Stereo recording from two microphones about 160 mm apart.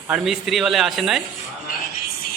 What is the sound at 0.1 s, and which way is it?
A man's voice, centre (ahead or behind).